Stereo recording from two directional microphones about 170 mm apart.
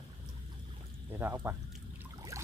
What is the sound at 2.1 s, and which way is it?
Trickle, 20° right (ahead or behind).